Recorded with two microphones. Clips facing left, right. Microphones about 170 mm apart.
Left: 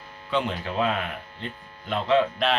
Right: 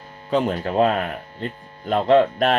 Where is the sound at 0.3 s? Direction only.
45° right (ahead or behind).